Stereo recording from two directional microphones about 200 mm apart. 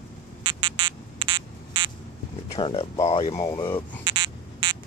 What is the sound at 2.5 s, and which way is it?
Speech, 30° left (ahead or behind).